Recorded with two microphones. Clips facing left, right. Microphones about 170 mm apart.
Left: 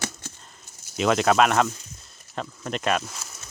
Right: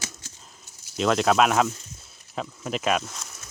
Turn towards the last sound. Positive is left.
turn(degrees=0)  # may be behind; listen again after turning